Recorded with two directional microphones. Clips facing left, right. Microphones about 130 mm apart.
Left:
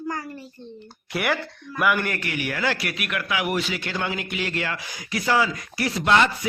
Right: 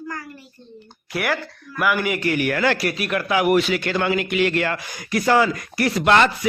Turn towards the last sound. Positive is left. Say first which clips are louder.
# right 3 dB
turn(degrees=-70)  # may be behind; listen again after turning